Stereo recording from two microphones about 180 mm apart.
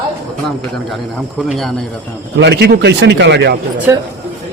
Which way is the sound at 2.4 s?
65° right (ahead or behind).